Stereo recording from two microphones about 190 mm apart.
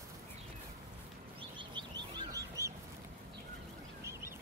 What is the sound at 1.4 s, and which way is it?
Bird, 25° right (ahead or behind).